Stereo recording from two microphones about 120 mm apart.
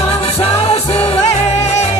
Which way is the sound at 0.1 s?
55° left (ahead or behind).